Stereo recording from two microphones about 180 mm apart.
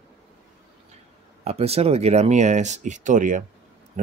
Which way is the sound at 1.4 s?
35° right (ahead or behind).